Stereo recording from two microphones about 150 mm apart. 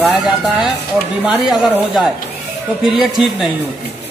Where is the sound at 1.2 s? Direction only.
5° right (ahead or behind).